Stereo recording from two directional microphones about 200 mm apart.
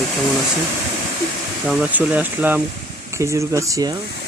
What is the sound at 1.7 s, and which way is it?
Speech, 10° right (ahead or behind).